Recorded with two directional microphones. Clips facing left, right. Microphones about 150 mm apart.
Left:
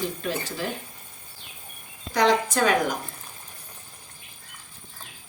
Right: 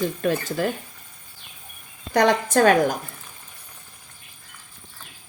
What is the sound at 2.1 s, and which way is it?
Speech, 55° right (ahead or behind).